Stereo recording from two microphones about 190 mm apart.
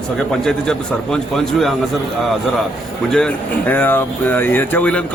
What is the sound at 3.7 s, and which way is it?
Speech, 10° left (ahead or behind).